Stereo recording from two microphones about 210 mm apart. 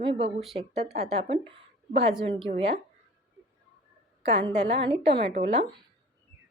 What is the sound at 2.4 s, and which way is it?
Speech, 25° right (ahead or behind).